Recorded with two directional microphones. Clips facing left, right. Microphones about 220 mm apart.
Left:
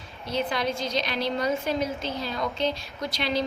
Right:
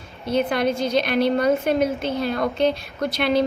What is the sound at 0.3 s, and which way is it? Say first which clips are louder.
A woman's voice: right 7 dB; 55° right (ahead or behind).